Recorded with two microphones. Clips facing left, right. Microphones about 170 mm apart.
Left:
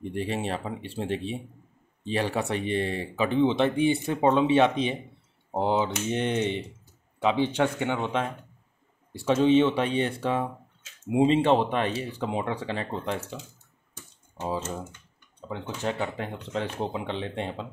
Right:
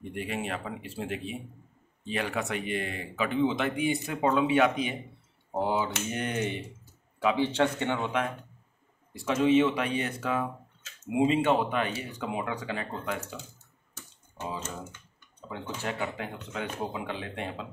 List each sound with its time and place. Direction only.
0.1 s speech: 30° left (ahead or behind); by 8.1 s 15° left (ahead or behind)
9.1 s speech: 30° left (ahead or behind)
15.6 s speech: 20° left (ahead or behind)